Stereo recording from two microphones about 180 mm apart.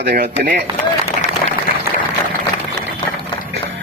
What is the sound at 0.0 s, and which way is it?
Speech, 60° right (ahead or behind).